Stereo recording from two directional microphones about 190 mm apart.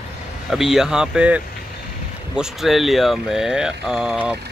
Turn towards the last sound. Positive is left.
turn(degrees=-5)  # may be behind; listen again after turning